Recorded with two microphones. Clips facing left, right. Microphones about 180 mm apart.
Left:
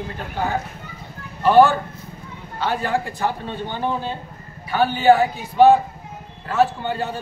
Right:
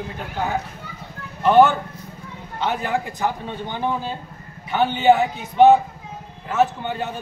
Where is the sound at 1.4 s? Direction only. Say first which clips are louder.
Left 1 dB; 20° right (ahead or behind).